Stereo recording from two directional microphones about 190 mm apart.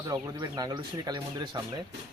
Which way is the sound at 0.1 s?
20° right (ahead or behind).